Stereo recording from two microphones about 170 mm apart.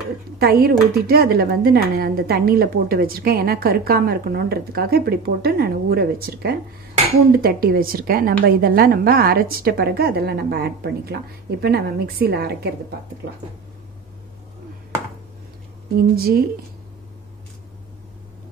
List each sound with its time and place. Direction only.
0.4 s a woman's voice: 65° right (ahead or behind)
16.0 s a woman's voice: 65° right (ahead or behind)